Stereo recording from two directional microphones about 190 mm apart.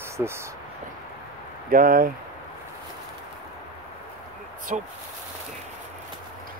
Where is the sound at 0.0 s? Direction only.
15° right (ahead or behind).